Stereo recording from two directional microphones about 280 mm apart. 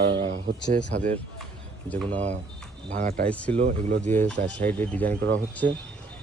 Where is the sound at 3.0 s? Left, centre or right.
Right.